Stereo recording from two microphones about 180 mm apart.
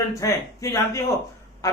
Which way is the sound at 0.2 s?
15° left (ahead or behind).